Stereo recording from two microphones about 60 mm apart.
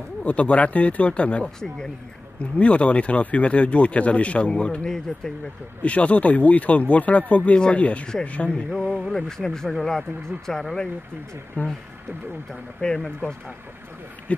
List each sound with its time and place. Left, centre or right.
0.2 s speech: left
8.7 s speech: centre
11.6 s speech: left
12.8 s speech: centre